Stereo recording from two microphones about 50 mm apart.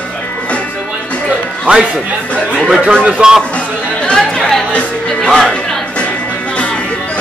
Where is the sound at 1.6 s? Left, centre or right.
Right.